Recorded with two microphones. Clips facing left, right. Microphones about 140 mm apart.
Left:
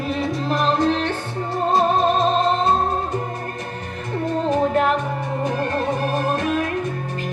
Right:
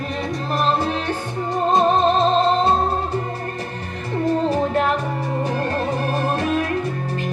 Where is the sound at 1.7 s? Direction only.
25° right (ahead or behind).